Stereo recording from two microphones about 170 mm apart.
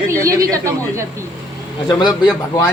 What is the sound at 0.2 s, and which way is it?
Speech, 20° right (ahead or behind).